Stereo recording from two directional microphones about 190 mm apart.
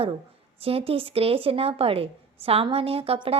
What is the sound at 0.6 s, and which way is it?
A woman's voice, 30° right (ahead or behind).